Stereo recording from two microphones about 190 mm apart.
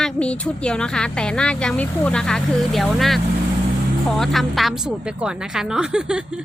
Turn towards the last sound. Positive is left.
turn(degrees=-5)  # may be behind; listen again after turning